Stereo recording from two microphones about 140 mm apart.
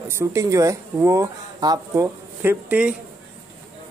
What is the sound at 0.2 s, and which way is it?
Speech, 20° right (ahead or behind).